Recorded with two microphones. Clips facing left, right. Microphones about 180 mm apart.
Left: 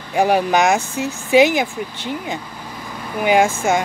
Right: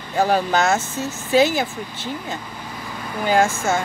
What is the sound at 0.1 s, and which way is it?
Speech, 15° left (ahead or behind).